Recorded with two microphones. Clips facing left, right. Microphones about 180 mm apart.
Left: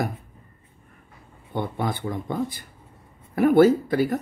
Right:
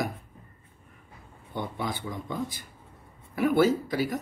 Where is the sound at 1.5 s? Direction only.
50° left (ahead or behind).